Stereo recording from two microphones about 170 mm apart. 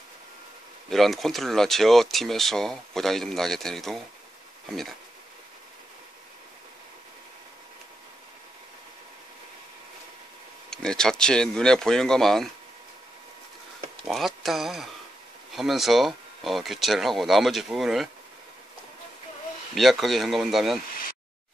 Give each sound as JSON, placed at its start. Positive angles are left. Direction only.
{"t": 0.8, "sound": "speech", "side_deg": 0}
{"t": 10.7, "sound": "speech", "side_deg": 5}
{"t": 14.0, "sound": "speech", "side_deg": 0}
{"t": 19.7, "sound": "speech", "side_deg": 0}